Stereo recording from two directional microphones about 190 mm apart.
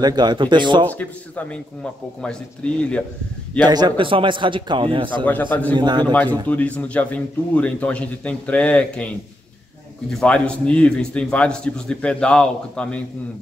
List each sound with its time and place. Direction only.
0.0 s a man's voice: 20° right (ahead or behind)
0.8 s speech: 10° left (ahead or behind)
3.6 s a man's voice: 20° right (ahead or behind)
5.2 s speech: 10° left (ahead or behind)
5.8 s a man's voice: 25° right (ahead or behind)
6.4 s a man's voice: 10° left (ahead or behind)